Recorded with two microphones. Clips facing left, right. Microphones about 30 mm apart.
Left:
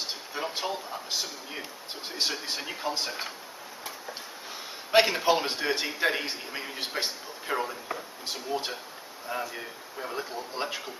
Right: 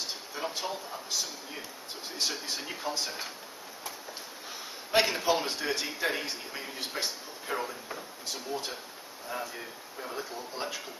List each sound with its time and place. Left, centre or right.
0.0 s a sound: left
1.1 s speech: left
4.9 s speech: left
8.3 s speech: left
9.3 s speech: centre